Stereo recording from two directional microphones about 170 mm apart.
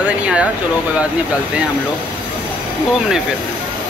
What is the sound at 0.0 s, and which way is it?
Speech, 5° right (ahead or behind).